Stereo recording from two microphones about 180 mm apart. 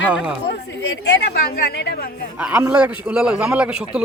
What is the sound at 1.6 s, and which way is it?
Speech, 65° left (ahead or behind).